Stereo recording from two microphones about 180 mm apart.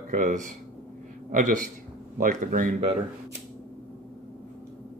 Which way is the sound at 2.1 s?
50° right (ahead or behind).